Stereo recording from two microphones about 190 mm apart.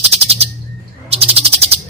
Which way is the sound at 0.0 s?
30° right (ahead or behind).